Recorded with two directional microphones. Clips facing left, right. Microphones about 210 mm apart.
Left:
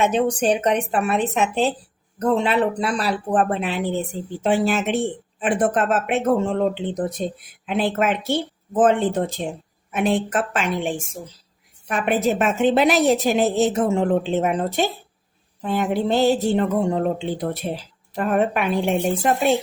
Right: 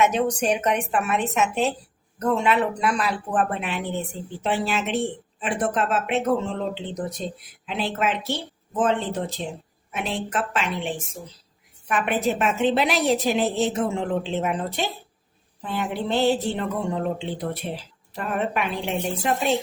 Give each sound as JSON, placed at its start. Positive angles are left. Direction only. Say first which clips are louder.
{"t": 0.0, "sound": "speech", "louder": "left 2 dB", "side_deg": 30}
{"t": 4.4, "sound": "a woman's voice", "louder": "left 5 dB", "side_deg": 45}